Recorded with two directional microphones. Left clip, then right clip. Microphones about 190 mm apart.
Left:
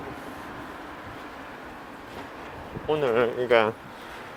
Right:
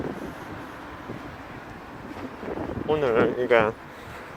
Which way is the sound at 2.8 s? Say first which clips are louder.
Right 1 dB; 5° right (ahead or behind).